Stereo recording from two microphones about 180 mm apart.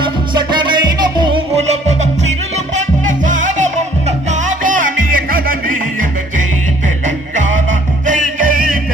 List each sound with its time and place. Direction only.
0.0 s music: 25° right (ahead or behind)
1.5 s music: 40° right (ahead or behind)